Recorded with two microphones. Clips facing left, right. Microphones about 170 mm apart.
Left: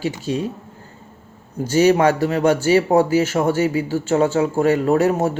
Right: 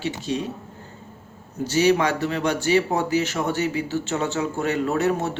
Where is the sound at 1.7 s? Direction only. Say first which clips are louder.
Left 5 dB; 45° left (ahead or behind).